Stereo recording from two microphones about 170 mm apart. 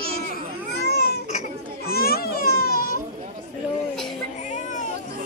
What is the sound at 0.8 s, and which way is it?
Baby cry, 70° left (ahead or behind).